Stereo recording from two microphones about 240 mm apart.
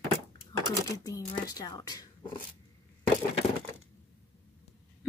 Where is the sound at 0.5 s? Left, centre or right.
Centre.